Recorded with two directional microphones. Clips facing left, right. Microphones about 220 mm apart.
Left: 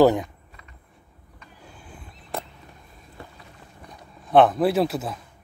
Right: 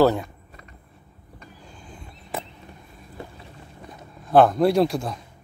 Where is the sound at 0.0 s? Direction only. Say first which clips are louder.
Left 2 dB; 15° left (ahead or behind).